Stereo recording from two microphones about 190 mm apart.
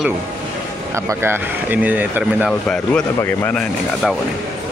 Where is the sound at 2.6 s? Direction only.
5° left (ahead or behind).